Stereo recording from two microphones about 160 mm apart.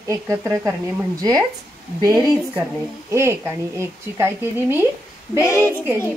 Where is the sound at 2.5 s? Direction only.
15° right (ahead or behind).